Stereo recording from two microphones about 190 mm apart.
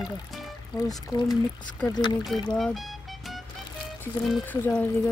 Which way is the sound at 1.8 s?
20° left (ahead or behind).